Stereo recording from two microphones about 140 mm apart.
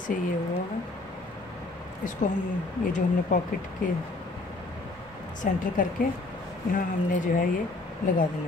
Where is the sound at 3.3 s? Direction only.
60° left (ahead or behind).